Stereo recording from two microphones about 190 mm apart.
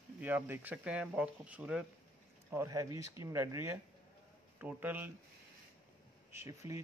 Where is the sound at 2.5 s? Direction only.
15° right (ahead or behind).